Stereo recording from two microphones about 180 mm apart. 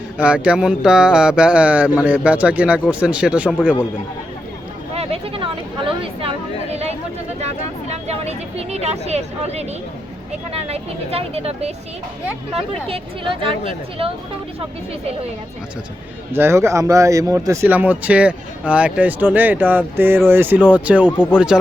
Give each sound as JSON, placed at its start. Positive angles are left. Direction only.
{"t": 0.2, "sound": "a man's voice", "side_deg": -5}
{"t": 4.9, "sound": "chatter", "side_deg": -35}
{"t": 7.4, "sound": "speech", "side_deg": -35}
{"t": 16.3, "sound": "a man's voice", "side_deg": -15}